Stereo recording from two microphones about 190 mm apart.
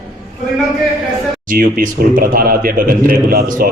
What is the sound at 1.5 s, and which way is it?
Speech, 50° right (ahead or behind).